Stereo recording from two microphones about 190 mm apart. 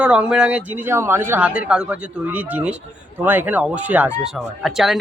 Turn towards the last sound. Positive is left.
turn(degrees=0)  # may be behind; listen again after turning